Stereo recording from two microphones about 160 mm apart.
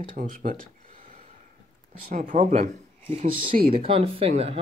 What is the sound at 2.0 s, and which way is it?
Speech, 50° right (ahead or behind).